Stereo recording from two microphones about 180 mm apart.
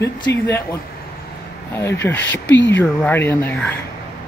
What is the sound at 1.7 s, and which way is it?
Speech, 15° left (ahead or behind).